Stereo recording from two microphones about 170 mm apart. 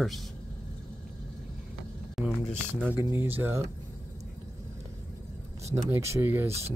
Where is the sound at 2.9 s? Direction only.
15° right (ahead or behind).